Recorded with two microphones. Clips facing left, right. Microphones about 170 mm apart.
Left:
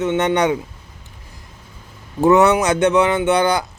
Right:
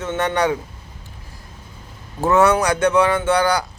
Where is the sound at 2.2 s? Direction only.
20° left (ahead or behind).